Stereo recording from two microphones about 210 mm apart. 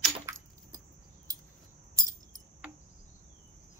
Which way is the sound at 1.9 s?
15° right (ahead or behind).